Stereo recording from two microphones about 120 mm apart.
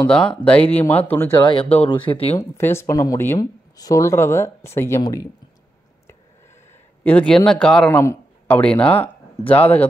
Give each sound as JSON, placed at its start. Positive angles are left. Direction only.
{"t": 0.0, "sound": "speech", "side_deg": 10}
{"t": 1.4, "sound": "speech", "side_deg": 50}
{"t": 2.3, "sound": "speech", "side_deg": 20}
{"t": 7.0, "sound": "speech", "side_deg": 10}